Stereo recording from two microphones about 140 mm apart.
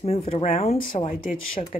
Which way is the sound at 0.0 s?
50° left (ahead or behind).